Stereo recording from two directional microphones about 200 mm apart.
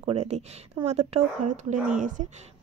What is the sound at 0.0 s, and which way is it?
A woman's voice, 35° right (ahead or behind).